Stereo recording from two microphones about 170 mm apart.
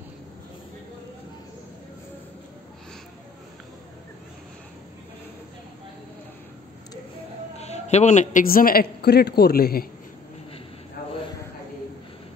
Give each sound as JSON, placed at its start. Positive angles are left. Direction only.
{"t": 7.5, "sound": "a woman's voice", "side_deg": 40}